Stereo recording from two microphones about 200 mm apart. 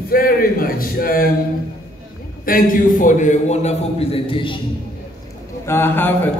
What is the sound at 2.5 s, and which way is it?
A man's voice, 40° left (ahead or behind).